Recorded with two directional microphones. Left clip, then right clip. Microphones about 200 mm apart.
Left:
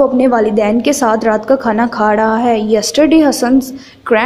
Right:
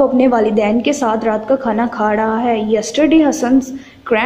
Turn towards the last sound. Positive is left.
turn(degrees=10)  # may be behind; listen again after turning